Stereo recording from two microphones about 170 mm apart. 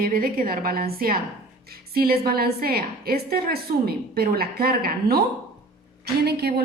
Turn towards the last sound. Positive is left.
turn(degrees=-70)  # may be behind; listen again after turning